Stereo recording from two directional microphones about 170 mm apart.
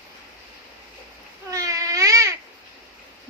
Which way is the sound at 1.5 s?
20° right (ahead or behind).